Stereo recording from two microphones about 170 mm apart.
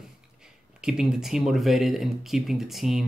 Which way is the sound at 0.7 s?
5° right (ahead or behind).